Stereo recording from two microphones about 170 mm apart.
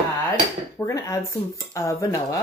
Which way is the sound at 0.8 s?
15° left (ahead or behind).